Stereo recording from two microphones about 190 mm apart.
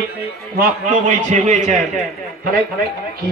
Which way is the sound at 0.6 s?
40° right (ahead or behind).